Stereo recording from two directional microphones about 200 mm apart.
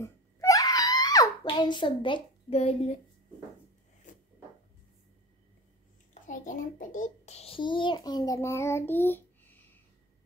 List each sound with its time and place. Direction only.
0.0 s wail: 15° left (ahead or behind); by 3.0 s 30° left (ahead or behind)
6.2 s a child's voice: 40° left (ahead or behind); by 9.6 s 10° left (ahead or behind)